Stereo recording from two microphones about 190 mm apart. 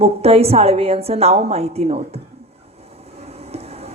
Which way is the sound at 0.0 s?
30° right (ahead or behind).